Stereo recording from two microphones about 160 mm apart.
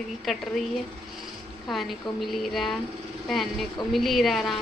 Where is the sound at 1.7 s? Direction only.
Centre (ahead or behind).